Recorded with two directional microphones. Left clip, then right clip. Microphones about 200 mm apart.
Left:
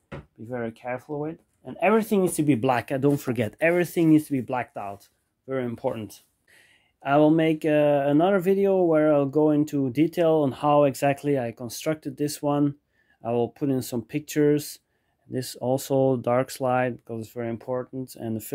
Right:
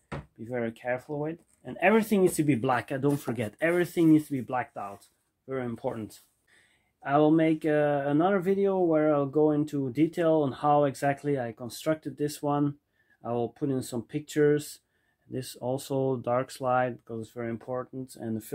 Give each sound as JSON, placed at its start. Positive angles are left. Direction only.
{"t": 0.4, "sound": "speech", "side_deg": 20}
{"t": 5.9, "sound": "speech", "side_deg": 30}
{"t": 7.0, "sound": "speech", "side_deg": 50}